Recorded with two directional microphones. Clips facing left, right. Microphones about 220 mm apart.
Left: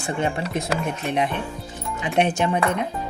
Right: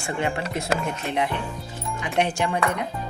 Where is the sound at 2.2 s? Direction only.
20° left (ahead or behind).